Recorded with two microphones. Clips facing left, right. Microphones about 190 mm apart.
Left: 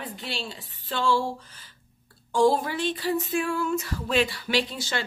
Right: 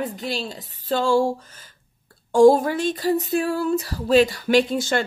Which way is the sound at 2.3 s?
45° right (ahead or behind).